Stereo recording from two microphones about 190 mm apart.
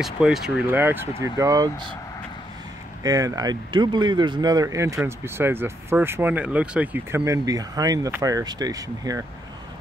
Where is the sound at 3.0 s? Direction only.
20° right (ahead or behind).